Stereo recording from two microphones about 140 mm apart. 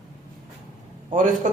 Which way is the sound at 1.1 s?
65° right (ahead or behind).